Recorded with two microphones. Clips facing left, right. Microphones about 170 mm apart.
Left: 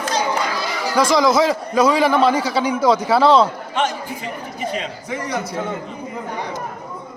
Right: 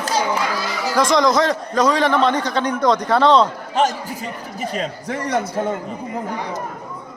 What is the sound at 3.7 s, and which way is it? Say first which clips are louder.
Speech: right 3 dB; 40° right (ahead or behind).